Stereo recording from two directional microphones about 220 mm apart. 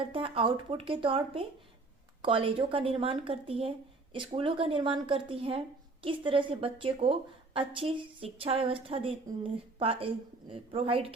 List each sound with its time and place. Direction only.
0.0 s speech: 25° right (ahead or behind)